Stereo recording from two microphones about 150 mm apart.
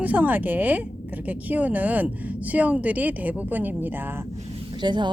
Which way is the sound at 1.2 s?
10° right (ahead or behind).